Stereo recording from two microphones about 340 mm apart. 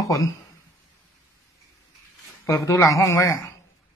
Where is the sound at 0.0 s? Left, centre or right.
Centre.